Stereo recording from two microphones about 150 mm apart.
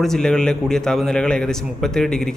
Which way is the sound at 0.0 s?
5° left (ahead or behind).